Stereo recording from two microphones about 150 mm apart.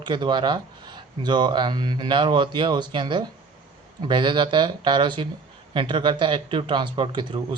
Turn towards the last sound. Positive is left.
turn(degrees=-35)  # may be behind; listen again after turning